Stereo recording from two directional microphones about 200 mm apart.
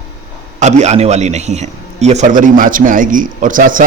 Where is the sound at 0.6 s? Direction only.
35° right (ahead or behind).